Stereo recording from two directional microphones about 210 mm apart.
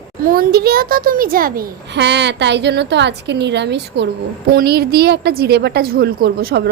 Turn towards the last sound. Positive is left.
turn(degrees=-45)  # may be behind; listen again after turning